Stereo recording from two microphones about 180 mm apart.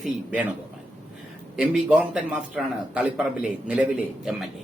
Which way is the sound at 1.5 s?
5° right (ahead or behind).